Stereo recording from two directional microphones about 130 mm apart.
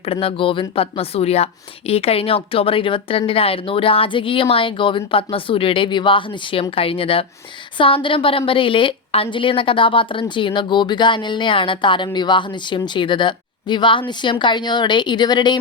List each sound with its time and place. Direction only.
0.0 s a woman's voice: 45° left (ahead or behind)